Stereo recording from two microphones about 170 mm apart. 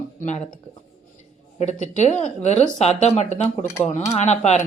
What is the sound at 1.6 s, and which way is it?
Speech, 45° left (ahead or behind).